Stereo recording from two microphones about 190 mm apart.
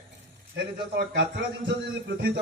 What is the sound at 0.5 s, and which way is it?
A man's voice, 65° right (ahead or behind).